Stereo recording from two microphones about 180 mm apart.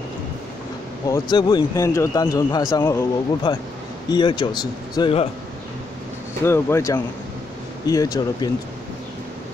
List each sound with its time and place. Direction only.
1.0 s speech: 20° left (ahead or behind)
3.5 s speech: 25° left (ahead or behind)
6.4 s speech: 15° left (ahead or behind)